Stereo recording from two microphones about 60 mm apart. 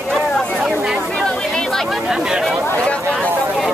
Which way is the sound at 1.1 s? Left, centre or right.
Centre.